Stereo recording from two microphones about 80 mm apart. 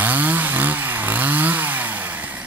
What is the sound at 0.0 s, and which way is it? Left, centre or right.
Chainsaw, right.